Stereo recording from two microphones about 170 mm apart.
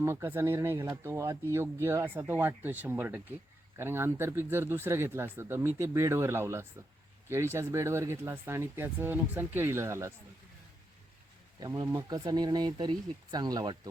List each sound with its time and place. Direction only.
0.0 s speech: 15° right (ahead or behind)
11.6 s speech: 20° right (ahead or behind)